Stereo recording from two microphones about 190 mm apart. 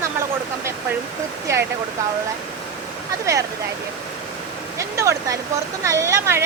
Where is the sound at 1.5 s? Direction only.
15° right (ahead or behind).